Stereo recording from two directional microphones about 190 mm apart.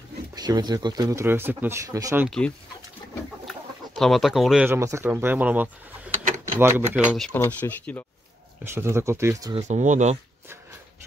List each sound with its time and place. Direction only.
0.3 s speech: 20° right (ahead or behind)
2.2 s speech: 5° left (ahead or behind)
3.4 s chicken: centre (ahead or behind)
4.6 s speech: 15° right (ahead or behind)
7.3 s speech: 10° left (ahead or behind)
8.7 s speech: 15° right (ahead or behind)
9.7 s speech: 40° right (ahead or behind)